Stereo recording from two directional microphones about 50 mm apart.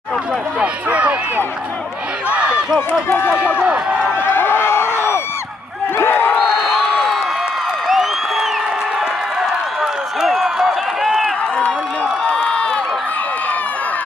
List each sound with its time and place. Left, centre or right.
0.6 s run: right
4.1 s a sound: left
5.9 s crowd: left
6.3 s crowd: centre
7.8 s a sound: centre
9.8 s run: centre
12.0 s run: left